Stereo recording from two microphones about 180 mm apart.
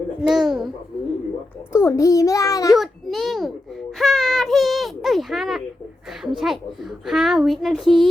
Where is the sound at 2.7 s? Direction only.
Centre (ahead or behind).